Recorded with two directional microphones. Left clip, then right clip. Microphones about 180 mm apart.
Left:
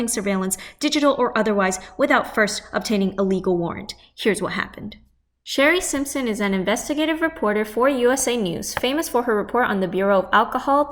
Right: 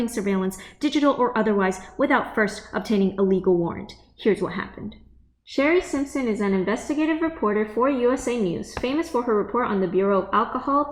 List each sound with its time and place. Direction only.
0.0 s a woman's voice: 10° left (ahead or behind)
5.6 s a woman's voice: 35° left (ahead or behind)